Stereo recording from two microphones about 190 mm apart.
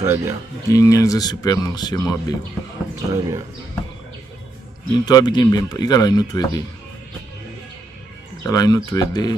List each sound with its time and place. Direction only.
0.0 s speech: 15° right (ahead or behind)
0.7 s speech: 15° left (ahead or behind)
3.1 s speech: 15° right (ahead or behind)
5.0 s speech: 20° left (ahead or behind)
8.5 s speech: 20° left (ahead or behind)